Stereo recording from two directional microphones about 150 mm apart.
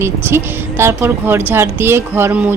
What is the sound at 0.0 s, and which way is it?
Speech, 15° right (ahead or behind).